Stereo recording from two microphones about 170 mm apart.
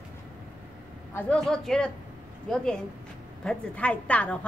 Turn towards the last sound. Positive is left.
turn(degrees=5)  # may be behind; listen again after turning